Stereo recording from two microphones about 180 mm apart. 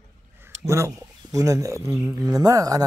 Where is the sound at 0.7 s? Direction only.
15° right (ahead or behind).